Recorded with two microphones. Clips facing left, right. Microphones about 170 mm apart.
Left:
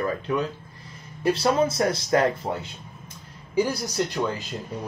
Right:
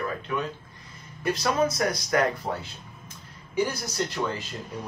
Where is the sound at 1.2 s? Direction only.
30° left (ahead or behind).